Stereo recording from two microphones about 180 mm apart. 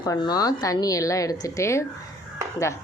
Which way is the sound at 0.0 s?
20° left (ahead or behind).